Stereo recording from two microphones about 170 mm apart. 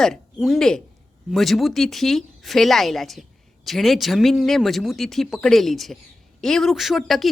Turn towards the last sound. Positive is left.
turn(degrees=0)  # may be behind; listen again after turning